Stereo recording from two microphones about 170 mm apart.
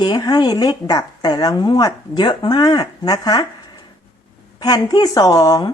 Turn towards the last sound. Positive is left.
turn(degrees=25)  # may be behind; listen again after turning